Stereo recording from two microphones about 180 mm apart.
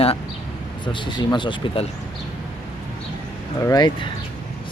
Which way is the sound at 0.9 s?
25° left (ahead or behind).